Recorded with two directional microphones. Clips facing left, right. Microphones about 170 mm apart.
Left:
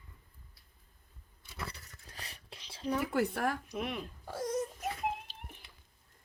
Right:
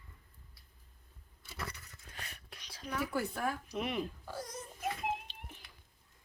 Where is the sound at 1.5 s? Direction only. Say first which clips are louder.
Even; 30° left (ahead or behind).